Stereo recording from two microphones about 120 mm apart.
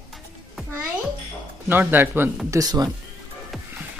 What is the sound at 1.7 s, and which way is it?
Speech, 15° right (ahead or behind).